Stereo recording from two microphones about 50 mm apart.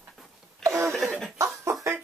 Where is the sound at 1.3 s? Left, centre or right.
Right.